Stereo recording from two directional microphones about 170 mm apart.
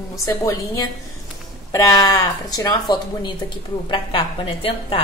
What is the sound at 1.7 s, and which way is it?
A woman's voice, 20° left (ahead or behind).